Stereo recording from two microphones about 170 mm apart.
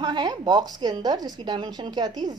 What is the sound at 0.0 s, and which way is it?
Speech, 25° right (ahead or behind).